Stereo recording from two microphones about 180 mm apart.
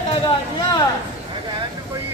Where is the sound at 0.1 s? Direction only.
25° left (ahead or behind).